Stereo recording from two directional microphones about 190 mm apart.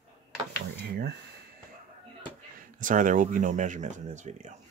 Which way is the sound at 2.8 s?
45° right (ahead or behind).